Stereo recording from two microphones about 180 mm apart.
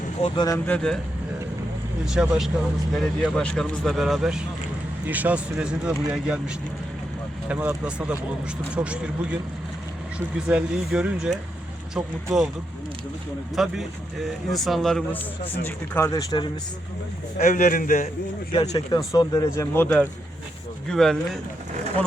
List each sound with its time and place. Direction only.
0.2 s speech: 20° left (ahead or behind)
0.7 s speech: 5° left (ahead or behind)
2.0 s speech: 5° right (ahead or behind)
7.4 s speech: 5° right (ahead or behind)
10.2 s speech: 5° right (ahead or behind)
13.6 s speech: centre (ahead or behind)
15.6 s speech: 15° left (ahead or behind)
17.3 s a man's voice: 40° left (ahead or behind)
17.6 s a man's voice: 50° left (ahead or behind)
18.9 s speech: 20° left (ahead or behind); by 21.2 s centre (ahead or behind)